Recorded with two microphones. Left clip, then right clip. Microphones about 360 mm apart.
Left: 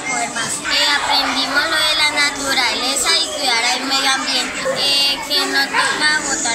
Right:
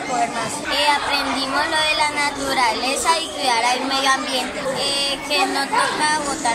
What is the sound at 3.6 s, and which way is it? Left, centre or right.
Child singing, centre.